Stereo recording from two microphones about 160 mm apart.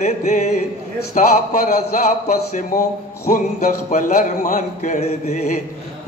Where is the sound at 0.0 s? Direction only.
45° left (ahead or behind).